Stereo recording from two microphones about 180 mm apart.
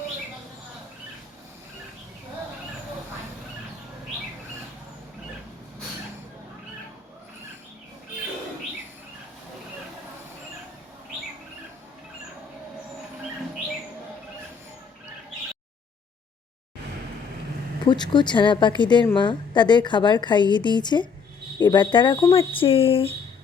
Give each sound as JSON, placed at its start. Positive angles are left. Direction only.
{"t": 17.8, "sound": "a woman's voice", "side_deg": 25}